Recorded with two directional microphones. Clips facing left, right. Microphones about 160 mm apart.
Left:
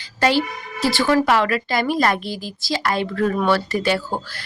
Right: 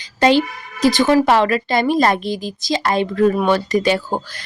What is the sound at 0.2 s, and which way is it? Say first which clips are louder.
Speech: right 4 dB; 20° right (ahead or behind).